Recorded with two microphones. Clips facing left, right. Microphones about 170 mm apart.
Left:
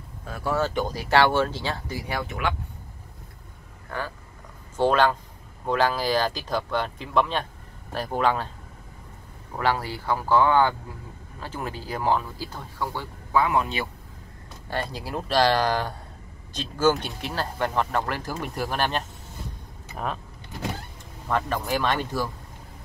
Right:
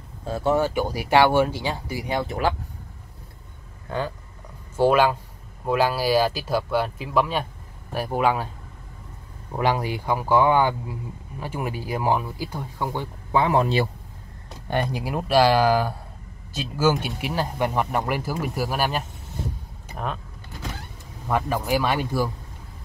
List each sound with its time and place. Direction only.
0.2 s speech: 25° right (ahead or behind)
0.6 s speech: 10° right (ahead or behind)
2.1 s speech: 35° right (ahead or behind)
3.9 s speech: 20° right (ahead or behind)
4.7 s speech: 10° right (ahead or behind)
9.6 s speech: 15° right (ahead or behind); by 13.8 s 35° right (ahead or behind)
14.7 s speech: 15° right (ahead or behind)
21.3 s speech: 10° right (ahead or behind)